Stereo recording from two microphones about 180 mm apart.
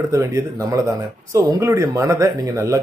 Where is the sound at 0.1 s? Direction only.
15° right (ahead or behind).